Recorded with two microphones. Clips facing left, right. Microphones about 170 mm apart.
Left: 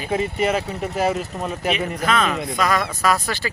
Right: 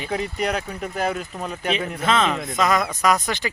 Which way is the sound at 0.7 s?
75° left (ahead or behind).